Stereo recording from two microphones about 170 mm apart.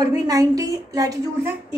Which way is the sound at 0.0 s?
20° right (ahead or behind).